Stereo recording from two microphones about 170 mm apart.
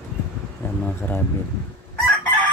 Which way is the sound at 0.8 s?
10° left (ahead or behind).